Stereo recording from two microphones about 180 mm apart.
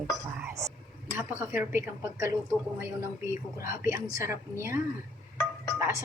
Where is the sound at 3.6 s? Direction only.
15° right (ahead or behind).